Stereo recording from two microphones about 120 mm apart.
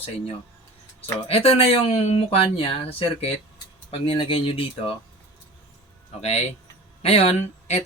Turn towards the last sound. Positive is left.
turn(degrees=65)  # may be behind; listen again after turning